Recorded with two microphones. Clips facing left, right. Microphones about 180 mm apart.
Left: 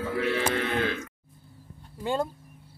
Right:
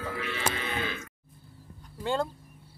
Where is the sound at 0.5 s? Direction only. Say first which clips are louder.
Left 7 dB; 65° left (ahead or behind).